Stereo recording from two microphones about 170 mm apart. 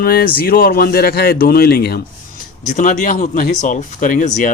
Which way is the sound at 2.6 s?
45° left (ahead or behind).